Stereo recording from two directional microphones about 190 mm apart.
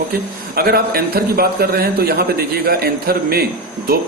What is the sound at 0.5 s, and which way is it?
Speech, 55° right (ahead or behind).